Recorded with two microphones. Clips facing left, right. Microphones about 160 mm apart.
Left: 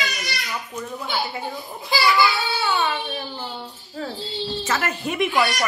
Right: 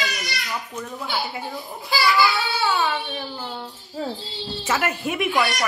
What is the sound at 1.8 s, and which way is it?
Speech, 20° left (ahead or behind).